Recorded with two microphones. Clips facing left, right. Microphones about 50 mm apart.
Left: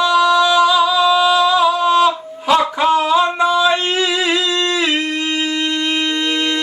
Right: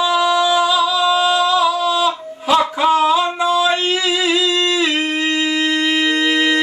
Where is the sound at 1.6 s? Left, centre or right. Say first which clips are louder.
Left 3 dB; left.